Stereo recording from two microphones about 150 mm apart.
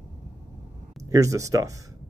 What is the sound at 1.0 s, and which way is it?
Speech, 20° right (ahead or behind).